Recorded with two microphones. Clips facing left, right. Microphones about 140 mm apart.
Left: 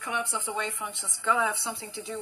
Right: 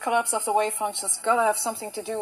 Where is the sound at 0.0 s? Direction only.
45° right (ahead or behind).